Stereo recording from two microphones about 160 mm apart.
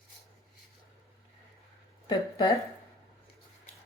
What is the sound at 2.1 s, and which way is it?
Speech, 25° left (ahead or behind).